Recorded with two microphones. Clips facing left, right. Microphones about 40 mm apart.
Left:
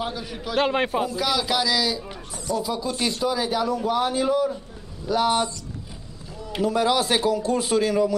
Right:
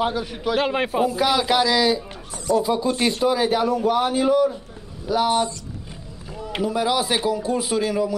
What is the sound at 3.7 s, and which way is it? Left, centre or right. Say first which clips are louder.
A man's voice: right 3 dB; centre.